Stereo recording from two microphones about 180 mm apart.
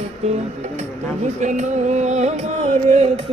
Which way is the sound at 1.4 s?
40° right (ahead or behind).